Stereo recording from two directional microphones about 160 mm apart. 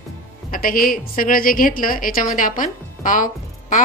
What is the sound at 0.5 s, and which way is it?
A woman's voice, 65° left (ahead or behind).